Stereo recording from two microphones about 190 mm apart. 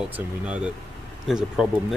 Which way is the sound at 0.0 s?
5° right (ahead or behind).